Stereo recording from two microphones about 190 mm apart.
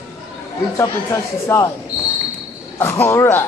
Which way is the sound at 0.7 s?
15° left (ahead or behind).